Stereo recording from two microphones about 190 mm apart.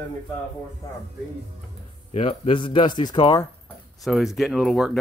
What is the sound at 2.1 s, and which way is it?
A man's voice, 30° left (ahead or behind).